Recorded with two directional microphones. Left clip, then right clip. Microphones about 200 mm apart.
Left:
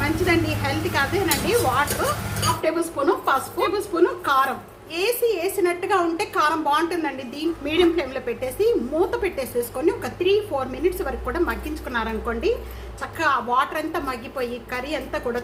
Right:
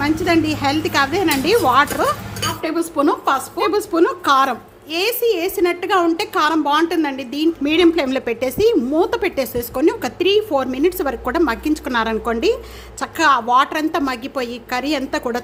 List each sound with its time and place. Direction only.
0.0 s a woman's voice: 60° right (ahead or behind)